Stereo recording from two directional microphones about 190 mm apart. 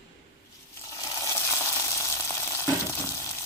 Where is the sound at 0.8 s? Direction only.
20° left (ahead or behind).